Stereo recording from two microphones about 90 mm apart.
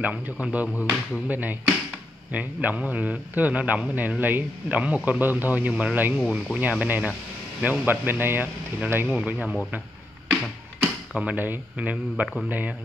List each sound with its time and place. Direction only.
0.0 s a man's voice: 15° right (ahead or behind)
10.8 s a man's voice: 15° right (ahead or behind)